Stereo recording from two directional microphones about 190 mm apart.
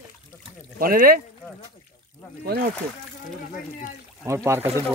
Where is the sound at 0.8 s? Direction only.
50° right (ahead or behind).